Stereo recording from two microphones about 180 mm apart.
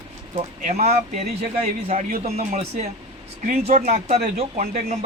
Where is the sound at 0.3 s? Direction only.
40° right (ahead or behind).